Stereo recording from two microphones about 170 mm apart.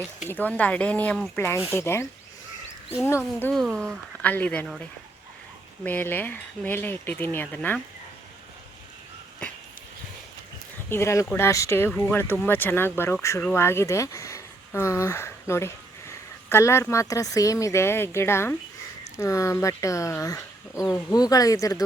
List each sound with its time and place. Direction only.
0.3 s speech: 10° left (ahead or behind)
3.1 s speech: 15° left (ahead or behind)
3.5 s speech: centre (ahead or behind)
5.8 s speech: 10° left (ahead or behind)
10.8 s speech: 15° left (ahead or behind)